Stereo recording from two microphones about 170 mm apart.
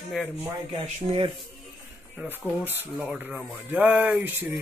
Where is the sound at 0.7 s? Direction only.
30° right (ahead or behind).